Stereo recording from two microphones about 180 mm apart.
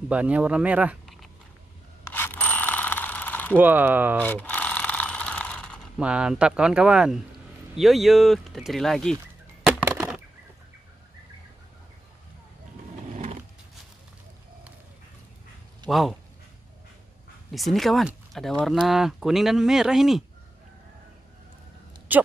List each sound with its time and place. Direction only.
0.1 s speech: 5° right (ahead or behind)
2.0 s bicycle bell: 10° left (ahead or behind)
3.5 s speech: 10° right (ahead or behind)
4.2 s ratchet: 10° left (ahead or behind)
5.9 s speech: 5° right (ahead or behind)
9.7 s a sound: 5° right (ahead or behind)
13.1 s a sound: 40° right (ahead or behind)
15.9 s speech: centre (ahead or behind)
17.5 s speech: centre (ahead or behind)
22.1 s speech: 10° right (ahead or behind)